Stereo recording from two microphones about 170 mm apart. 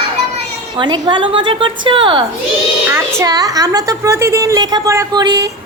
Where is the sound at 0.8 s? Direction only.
25° right (ahead or behind).